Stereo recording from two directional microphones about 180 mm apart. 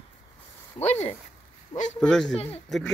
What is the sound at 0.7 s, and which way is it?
Speech, 35° left (ahead or behind).